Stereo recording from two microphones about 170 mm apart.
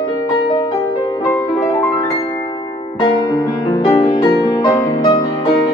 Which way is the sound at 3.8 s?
35° left (ahead or behind).